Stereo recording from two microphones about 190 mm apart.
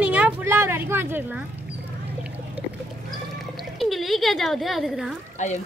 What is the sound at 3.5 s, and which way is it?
Speech, centre (ahead or behind).